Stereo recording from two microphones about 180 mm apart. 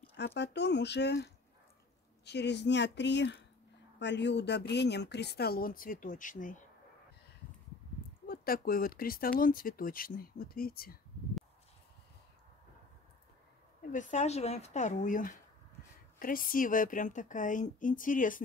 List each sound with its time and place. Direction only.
0.1 s speech: 70° left (ahead or behind); by 6.6 s 45° left (ahead or behind)
8.3 s speech: 55° left (ahead or behind)
13.9 s speech: 40° left (ahead or behind)